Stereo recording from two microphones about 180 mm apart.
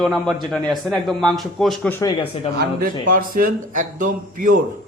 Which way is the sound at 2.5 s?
55° right (ahead or behind).